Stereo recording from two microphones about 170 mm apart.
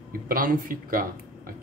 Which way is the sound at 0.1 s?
55° right (ahead or behind).